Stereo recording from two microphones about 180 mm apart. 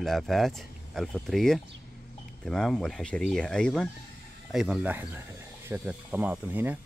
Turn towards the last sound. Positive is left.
turn(degrees=-10)  # may be behind; listen again after turning